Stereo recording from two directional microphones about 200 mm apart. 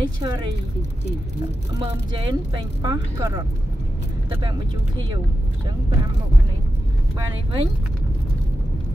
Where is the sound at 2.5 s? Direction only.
20° right (ahead or behind).